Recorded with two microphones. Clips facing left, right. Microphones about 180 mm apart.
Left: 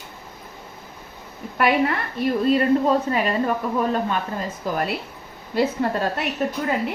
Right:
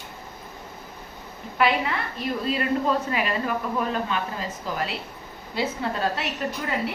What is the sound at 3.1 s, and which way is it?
Speech, 40° left (ahead or behind).